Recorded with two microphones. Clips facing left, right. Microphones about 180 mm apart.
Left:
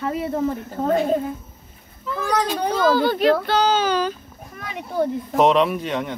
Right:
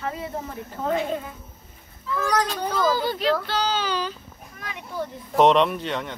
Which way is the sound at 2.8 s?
65° left (ahead or behind).